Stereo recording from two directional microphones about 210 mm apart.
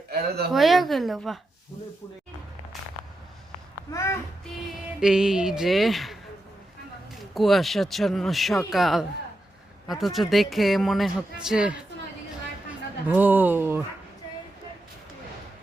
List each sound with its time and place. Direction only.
0.1 s speech: 50° right (ahead or behind)
0.5 s a man's voice: centre (ahead or behind)
3.9 s child singing: 15° left (ahead or behind)
4.9 s a man's voice: 5° right (ahead or behind)
7.3 s a man's voice: centre (ahead or behind)
13.1 s speech: 10° right (ahead or behind)